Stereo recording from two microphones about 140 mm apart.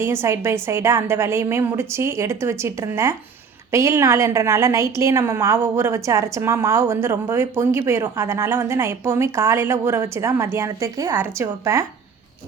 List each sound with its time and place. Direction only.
0.0 s a woman's voice: 20° right (ahead or behind)